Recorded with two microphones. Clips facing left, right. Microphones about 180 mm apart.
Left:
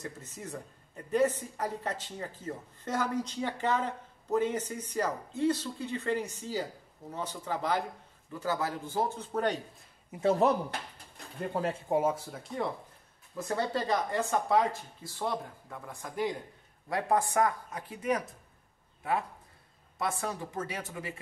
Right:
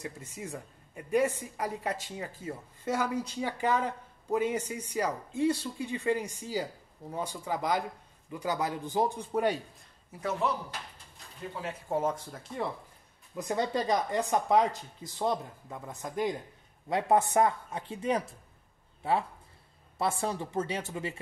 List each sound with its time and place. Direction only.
0.0 s a man's voice: 10° right (ahead or behind)
10.4 s speech: 50° left (ahead or behind)
11.9 s speech: 10° left (ahead or behind)
13.4 s speech: 15° right (ahead or behind)